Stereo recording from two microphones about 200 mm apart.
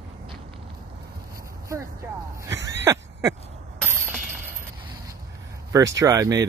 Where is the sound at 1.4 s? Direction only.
15° right (ahead or behind).